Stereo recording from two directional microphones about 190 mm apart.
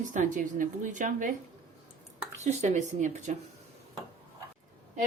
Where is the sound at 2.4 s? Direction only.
35° right (ahead or behind).